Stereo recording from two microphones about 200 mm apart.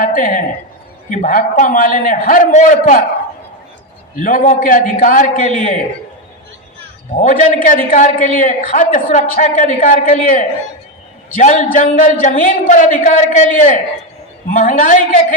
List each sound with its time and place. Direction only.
0.0 s a man's voice: 45° left (ahead or behind)
4.1 s a man's voice: 45° left (ahead or behind)
7.2 s a woman's voice: 40° left (ahead or behind)